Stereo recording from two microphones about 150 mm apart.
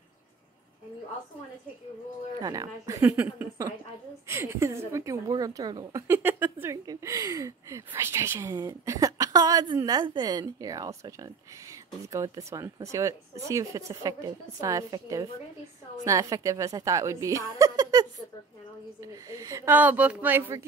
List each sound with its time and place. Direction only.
2.4 s speech: 25° right (ahead or behind)
6.0 s a woman's voice: 15° right (ahead or behind)